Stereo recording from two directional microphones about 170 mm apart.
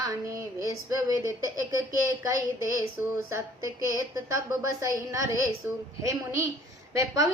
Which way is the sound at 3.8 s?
20° right (ahead or behind).